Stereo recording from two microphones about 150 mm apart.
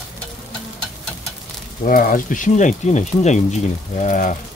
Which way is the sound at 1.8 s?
70° left (ahead or behind).